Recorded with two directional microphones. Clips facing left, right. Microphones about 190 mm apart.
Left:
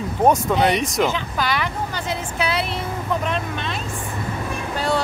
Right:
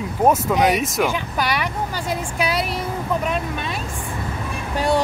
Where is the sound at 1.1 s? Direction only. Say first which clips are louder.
Right 1 dB; 10° right (ahead or behind).